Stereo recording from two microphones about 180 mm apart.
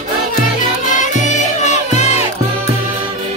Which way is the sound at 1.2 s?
40° left (ahead or behind).